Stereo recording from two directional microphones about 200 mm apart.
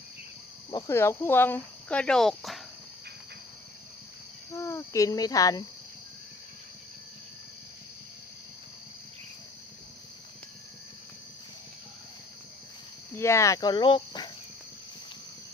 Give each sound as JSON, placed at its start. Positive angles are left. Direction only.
{"t": 0.7, "sound": "speech", "side_deg": 15}
{"t": 4.5, "sound": "speech", "side_deg": 15}
{"t": 13.1, "sound": "speech", "side_deg": 15}